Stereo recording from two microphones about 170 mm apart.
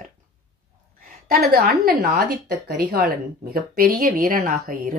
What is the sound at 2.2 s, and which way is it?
Speech, 65° right (ahead or behind).